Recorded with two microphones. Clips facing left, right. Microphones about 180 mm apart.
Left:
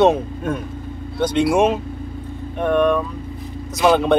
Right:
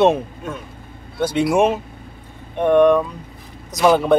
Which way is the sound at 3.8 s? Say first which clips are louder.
Right 1 dB; 5° right (ahead or behind).